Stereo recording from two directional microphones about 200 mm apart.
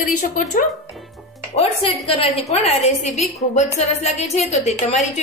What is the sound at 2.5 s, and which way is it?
Speech, 35° left (ahead or behind).